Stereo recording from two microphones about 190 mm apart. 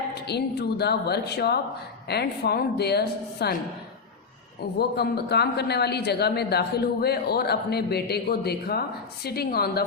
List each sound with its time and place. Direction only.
0.1 s speech: 60° left (ahead or behind)
4.8 s speech: 60° left (ahead or behind)